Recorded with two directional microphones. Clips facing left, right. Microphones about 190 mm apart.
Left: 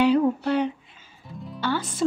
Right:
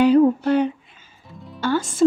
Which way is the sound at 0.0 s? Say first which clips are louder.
Right 5 dB; 45° right (ahead or behind).